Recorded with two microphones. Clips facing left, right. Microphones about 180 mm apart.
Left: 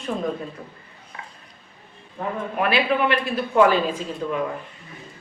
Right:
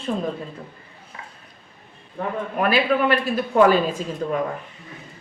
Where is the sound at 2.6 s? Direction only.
40° right (ahead or behind).